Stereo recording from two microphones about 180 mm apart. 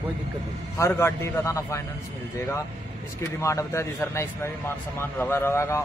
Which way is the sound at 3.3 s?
15° left (ahead or behind).